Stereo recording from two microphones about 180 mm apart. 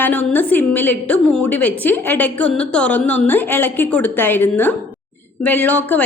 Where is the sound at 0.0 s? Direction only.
10° left (ahead or behind).